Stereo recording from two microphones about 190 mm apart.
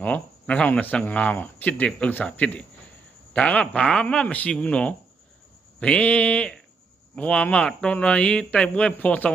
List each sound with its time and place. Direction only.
0.0 s speech: 10° left (ahead or behind)